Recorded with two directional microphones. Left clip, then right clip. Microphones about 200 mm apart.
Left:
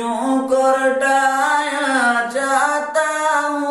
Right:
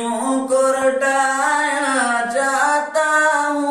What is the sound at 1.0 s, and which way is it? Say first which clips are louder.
Singing: left 1 dB; 10° right (ahead or behind).